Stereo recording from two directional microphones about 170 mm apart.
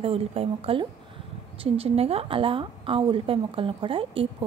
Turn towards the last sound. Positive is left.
turn(degrees=-30)  # may be behind; listen again after turning